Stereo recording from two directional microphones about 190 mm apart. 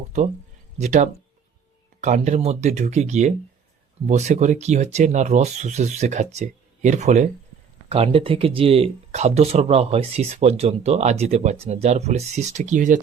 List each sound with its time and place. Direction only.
0.8 s speech: 40° right (ahead or behind)